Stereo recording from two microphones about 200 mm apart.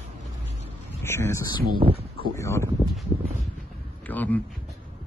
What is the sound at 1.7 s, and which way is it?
Speech, 25° right (ahead or behind).